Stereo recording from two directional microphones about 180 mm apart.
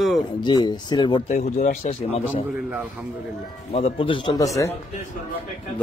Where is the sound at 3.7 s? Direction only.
30° left (ahead or behind).